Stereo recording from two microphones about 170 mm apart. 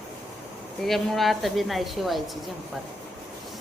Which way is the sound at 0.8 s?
Centre (ahead or behind).